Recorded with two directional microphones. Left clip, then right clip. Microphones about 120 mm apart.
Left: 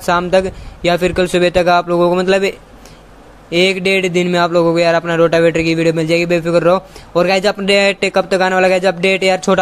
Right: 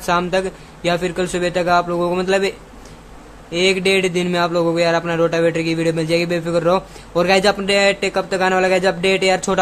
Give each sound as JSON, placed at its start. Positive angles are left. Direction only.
{"t": 0.3, "sound": "speech", "side_deg": 35}